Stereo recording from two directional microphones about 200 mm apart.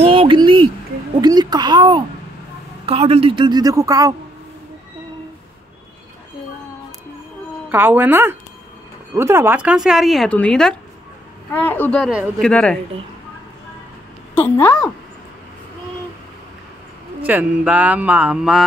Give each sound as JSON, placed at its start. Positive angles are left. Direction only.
{"t": 0.0, "sound": "a sound", "side_deg": -25}
{"t": 1.2, "sound": "a man's voice", "side_deg": -20}
{"t": 7.7, "sound": "speech", "side_deg": -10}
{"t": 14.3, "sound": "speech", "side_deg": 10}
{"t": 17.2, "sound": "speech", "side_deg": -10}